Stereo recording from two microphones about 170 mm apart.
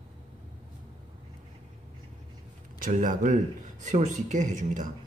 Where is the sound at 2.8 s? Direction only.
50° right (ahead or behind).